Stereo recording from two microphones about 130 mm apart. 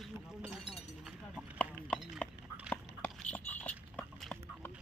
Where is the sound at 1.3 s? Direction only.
5° left (ahead or behind).